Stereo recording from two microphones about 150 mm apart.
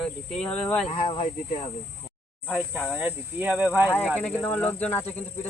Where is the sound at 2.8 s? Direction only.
10° right (ahead or behind).